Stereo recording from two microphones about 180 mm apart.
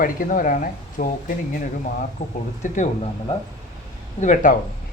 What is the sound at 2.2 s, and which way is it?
Speech, 45° left (ahead or behind).